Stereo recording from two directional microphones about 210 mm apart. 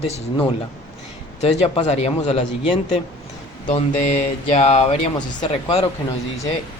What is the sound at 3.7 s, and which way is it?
Speech, 35° left (ahead or behind).